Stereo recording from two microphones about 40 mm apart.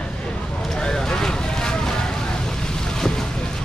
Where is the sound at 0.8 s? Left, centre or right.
Centre.